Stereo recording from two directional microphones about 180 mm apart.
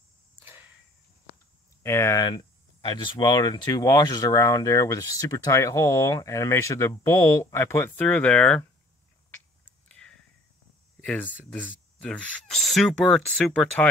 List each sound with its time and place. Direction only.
0.4 s a sound: 10° right (ahead or behind)
1.8 s speech: 15° left (ahead or behind)
9.8 s whispering: 5° left (ahead or behind)
11.0 s speech: 10° left (ahead or behind)